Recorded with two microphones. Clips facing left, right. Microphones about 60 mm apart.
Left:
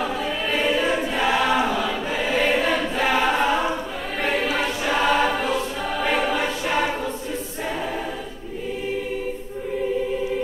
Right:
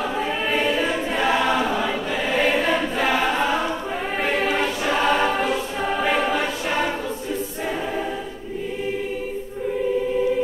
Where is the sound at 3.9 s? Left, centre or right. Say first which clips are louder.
Right 4 dB; right.